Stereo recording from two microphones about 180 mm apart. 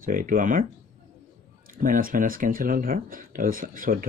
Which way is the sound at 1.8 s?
50° right (ahead or behind).